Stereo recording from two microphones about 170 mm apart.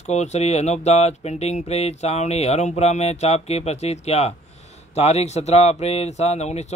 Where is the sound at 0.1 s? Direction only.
40° left (ahead or behind).